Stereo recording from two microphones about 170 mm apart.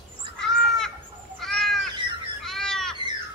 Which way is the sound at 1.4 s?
5° left (ahead or behind).